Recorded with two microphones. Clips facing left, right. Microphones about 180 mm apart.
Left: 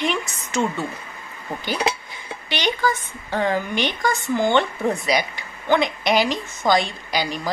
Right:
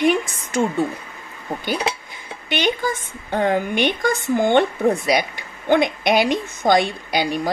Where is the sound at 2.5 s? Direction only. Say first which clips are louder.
Right 1 dB; 50° right (ahead or behind).